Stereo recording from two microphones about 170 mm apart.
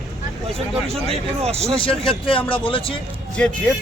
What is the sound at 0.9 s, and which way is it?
Speech, 35° right (ahead or behind).